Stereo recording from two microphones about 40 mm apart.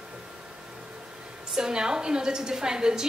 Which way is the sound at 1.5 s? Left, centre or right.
Centre.